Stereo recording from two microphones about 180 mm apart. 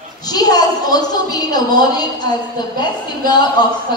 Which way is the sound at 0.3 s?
20° left (ahead or behind).